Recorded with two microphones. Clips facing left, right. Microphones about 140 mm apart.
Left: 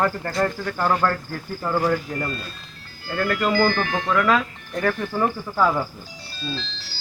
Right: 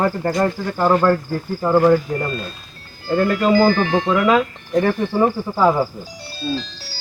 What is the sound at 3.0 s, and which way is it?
Speech, 25° right (ahead or behind).